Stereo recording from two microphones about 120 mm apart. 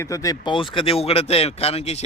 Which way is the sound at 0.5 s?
45° left (ahead or behind).